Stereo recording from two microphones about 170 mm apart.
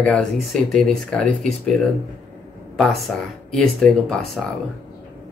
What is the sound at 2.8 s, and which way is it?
Speech, centre (ahead or behind).